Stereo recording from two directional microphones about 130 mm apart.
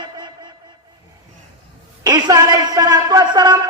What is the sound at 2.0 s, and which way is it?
A man's voice, 30° right (ahead or behind).